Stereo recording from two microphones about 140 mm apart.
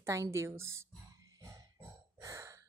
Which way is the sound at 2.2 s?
25° right (ahead or behind).